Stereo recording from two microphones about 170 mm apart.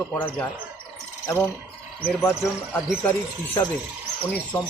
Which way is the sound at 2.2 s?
15° left (ahead or behind).